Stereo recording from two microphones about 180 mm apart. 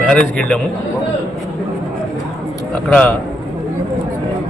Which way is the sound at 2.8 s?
5° left (ahead or behind).